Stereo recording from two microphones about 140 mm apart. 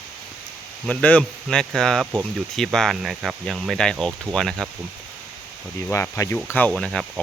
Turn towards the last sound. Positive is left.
turn(degrees=5)  # may be behind; listen again after turning